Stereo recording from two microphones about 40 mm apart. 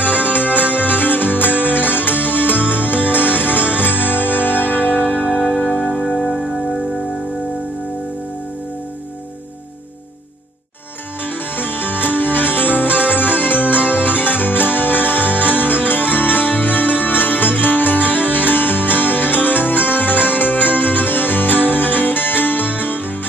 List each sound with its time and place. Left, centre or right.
0.0 s music: left
5.3 s music: left
6.1 s music: centre
11.5 s music: left